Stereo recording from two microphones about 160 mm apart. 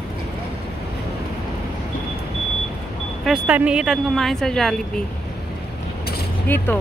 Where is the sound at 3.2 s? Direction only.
5° right (ahead or behind).